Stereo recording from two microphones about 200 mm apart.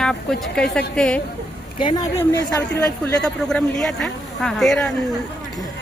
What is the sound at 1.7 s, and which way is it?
Speech, 20° left (ahead or behind).